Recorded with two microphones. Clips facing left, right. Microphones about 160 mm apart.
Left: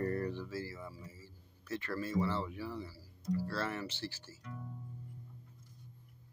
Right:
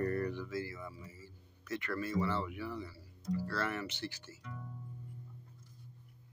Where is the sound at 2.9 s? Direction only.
5° left (ahead or behind).